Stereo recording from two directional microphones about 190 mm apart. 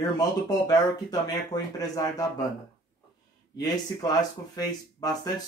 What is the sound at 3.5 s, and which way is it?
Speech, 20° left (ahead or behind).